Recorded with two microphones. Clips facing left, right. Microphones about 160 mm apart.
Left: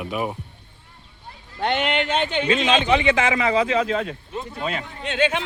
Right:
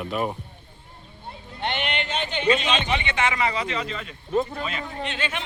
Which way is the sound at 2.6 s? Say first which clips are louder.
Left 7 dB; 90° left.